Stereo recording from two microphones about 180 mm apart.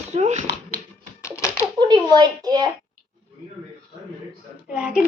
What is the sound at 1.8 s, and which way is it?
Speech, 25° right (ahead or behind).